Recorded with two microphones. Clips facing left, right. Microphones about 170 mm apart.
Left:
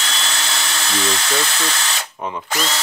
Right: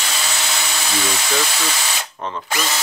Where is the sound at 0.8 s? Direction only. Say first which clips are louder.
Left 2 dB; 10° right (ahead or behind).